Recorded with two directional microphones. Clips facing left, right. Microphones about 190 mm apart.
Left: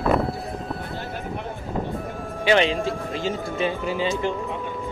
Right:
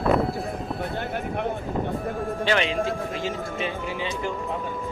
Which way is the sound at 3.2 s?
35° left (ahead or behind).